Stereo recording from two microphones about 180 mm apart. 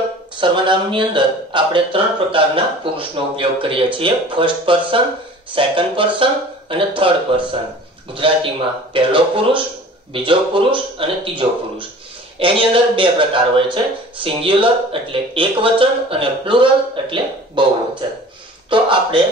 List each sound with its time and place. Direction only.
0.4 s speech: 25° right (ahead or behind)
18.7 s speech: 25° right (ahead or behind)